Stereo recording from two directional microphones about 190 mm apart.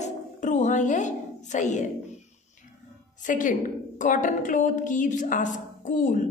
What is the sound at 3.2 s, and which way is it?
A woman's voice, 40° left (ahead or behind).